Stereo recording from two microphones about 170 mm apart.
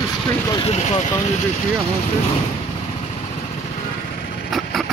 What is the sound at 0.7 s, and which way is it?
Speech, 40° left (ahead or behind).